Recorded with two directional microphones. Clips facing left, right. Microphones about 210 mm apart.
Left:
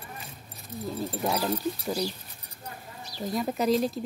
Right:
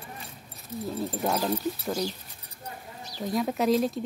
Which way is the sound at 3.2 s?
Centre (ahead or behind).